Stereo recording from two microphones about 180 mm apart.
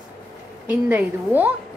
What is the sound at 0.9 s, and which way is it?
Speech, 10° right (ahead or behind).